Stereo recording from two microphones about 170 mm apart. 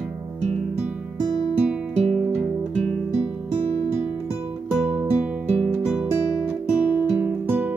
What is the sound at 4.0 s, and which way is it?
Music, 10° right (ahead or behind).